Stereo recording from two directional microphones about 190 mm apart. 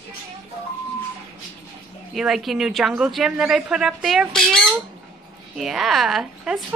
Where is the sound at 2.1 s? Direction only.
Centre (ahead or behind).